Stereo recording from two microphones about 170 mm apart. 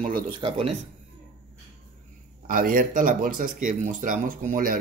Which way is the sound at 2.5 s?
55° right (ahead or behind).